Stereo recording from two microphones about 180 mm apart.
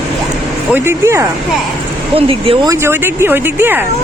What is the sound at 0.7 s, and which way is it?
Speech, 15° right (ahead or behind).